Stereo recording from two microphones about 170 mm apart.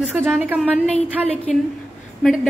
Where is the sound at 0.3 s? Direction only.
10° right (ahead or behind).